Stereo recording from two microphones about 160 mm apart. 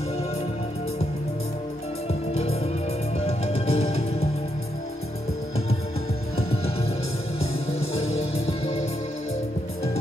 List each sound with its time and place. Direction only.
3.2 s music: 40° left (ahead or behind)
6.5 s music: 40° left (ahead or behind)